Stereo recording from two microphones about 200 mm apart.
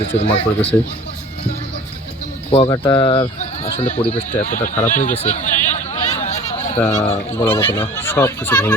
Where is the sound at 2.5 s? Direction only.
30° left (ahead or behind).